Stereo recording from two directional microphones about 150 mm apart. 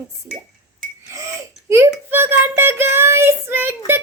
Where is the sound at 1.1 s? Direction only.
20° right (ahead or behind).